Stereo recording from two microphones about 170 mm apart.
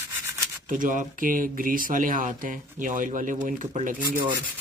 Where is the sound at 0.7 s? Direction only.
50° right (ahead or behind).